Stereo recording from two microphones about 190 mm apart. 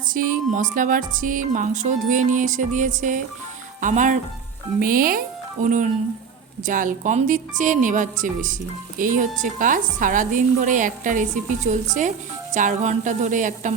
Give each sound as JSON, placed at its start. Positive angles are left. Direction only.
{"t": 0.1, "sound": "a woman's voice", "side_deg": -45}
{"t": 6.6, "sound": "a woman's voice", "side_deg": -45}